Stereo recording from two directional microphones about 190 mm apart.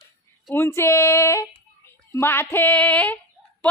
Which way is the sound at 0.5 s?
15° left (ahead or behind).